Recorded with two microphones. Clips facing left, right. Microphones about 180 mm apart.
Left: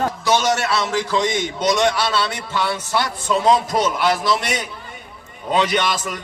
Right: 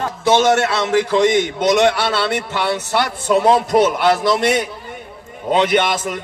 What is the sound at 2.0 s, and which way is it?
A man's voice, 60° right (ahead or behind).